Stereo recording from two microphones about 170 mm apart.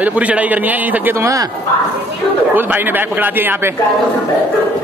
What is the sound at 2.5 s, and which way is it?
A man's voice, 10° right (ahead or behind).